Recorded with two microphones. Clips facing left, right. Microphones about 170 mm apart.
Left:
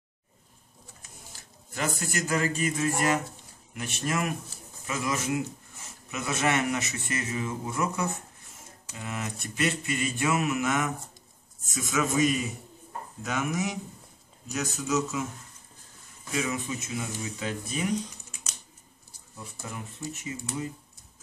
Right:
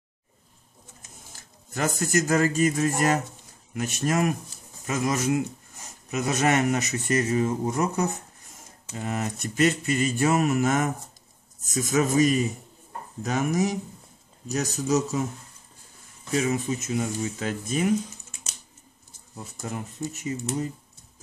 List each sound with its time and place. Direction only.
1.7 s speech: 45° right (ahead or behind)
16.3 s speech: 40° right (ahead or behind)
20.1 s speech: 40° right (ahead or behind)